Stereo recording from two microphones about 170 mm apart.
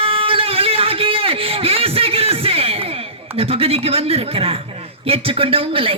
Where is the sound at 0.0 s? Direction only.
35° right (ahead or behind).